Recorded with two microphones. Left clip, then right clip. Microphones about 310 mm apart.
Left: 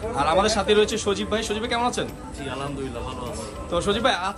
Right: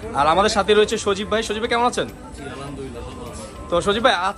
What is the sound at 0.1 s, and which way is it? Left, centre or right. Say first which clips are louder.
Speech: right 4 dB; centre.